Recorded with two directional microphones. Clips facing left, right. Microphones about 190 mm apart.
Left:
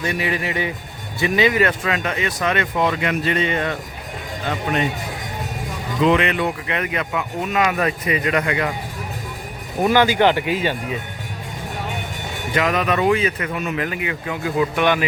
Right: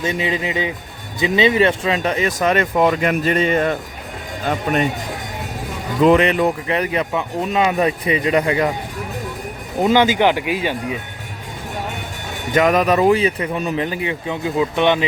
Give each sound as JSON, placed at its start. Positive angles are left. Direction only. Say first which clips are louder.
{"t": 0.0, "sound": "a man's voice", "louder": "right 2 dB", "side_deg": -20}
{"t": 6.0, "sound": "speech", "louder": "right 4 dB", "side_deg": -40}
{"t": 9.8, "sound": "speech", "louder": "right 1 dB", "side_deg": -20}
{"t": 12.5, "sound": "speech", "louder": "right 5 dB", "side_deg": -45}